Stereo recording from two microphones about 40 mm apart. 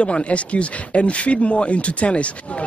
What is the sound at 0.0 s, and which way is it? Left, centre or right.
Speech, left.